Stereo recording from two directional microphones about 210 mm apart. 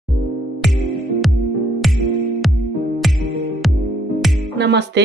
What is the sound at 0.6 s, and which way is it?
Music, centre (ahead or behind).